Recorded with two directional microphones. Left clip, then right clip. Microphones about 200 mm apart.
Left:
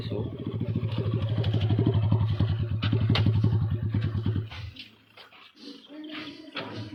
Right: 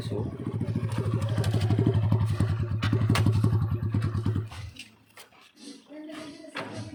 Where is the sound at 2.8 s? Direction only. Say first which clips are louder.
Right 1 dB; 15° right (ahead or behind).